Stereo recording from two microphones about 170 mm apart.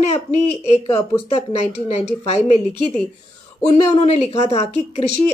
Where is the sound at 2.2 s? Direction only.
40° left (ahead or behind).